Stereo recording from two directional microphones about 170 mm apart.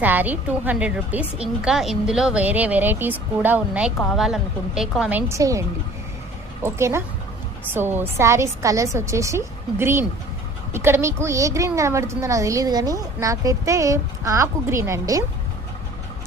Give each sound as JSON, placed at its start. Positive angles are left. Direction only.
{"t": 0.0, "sound": "a woman's voice", "side_deg": -10}
{"t": 5.3, "sound": "speech", "side_deg": -20}
{"t": 6.7, "sound": "a woman's voice", "side_deg": -15}